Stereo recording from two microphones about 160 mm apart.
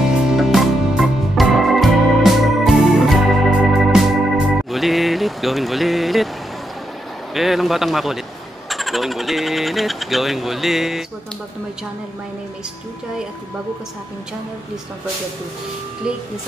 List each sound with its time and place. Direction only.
0.0 s music: centre (ahead or behind)
4.6 s a sound: centre (ahead or behind)
7.3 s speech: centre (ahead or behind)